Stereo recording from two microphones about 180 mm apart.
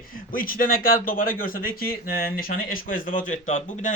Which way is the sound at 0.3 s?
50° left (ahead or behind).